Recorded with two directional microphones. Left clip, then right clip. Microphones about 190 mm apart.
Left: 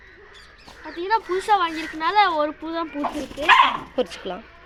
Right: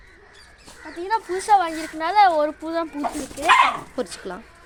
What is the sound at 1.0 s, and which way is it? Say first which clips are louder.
Speech: left 2 dB; 30° right (ahead or behind).